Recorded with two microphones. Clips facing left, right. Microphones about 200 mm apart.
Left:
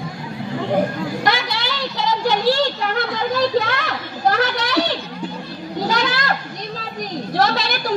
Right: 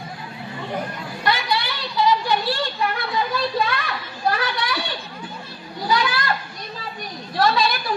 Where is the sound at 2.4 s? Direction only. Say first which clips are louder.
Left 8 dB; 90° left.